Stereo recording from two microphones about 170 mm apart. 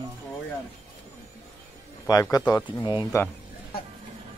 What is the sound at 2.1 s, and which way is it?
Speech, 20° left (ahead or behind).